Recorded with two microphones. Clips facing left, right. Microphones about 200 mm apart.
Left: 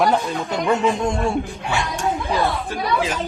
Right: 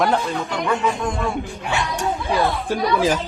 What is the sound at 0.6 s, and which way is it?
Music, 25° left (ahead or behind).